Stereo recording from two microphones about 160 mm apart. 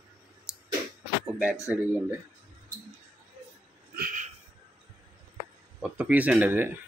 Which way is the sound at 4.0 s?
55° right (ahead or behind).